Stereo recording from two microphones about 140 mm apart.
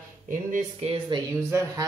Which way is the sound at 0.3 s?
70° right (ahead or behind).